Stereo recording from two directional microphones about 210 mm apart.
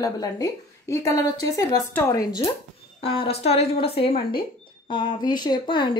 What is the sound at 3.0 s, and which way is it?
Speech, 25° left (ahead or behind).